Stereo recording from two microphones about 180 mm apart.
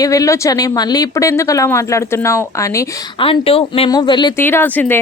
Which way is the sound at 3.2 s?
30° left (ahead or behind).